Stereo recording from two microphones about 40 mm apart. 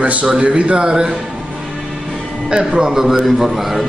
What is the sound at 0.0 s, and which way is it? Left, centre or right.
A man's voice, right.